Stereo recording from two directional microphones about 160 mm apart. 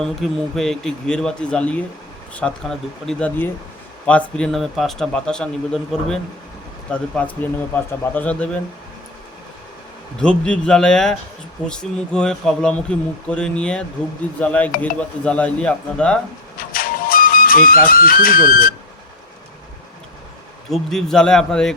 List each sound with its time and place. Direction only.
0.0 s speech: centre (ahead or behind)
10.2 s speech: 5° left (ahead or behind)
16.6 s music: 65° left (ahead or behind)
20.7 s speech: centre (ahead or behind)